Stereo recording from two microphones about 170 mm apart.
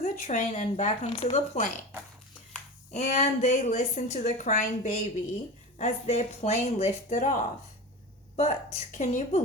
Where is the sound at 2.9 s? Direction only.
45° left (ahead or behind).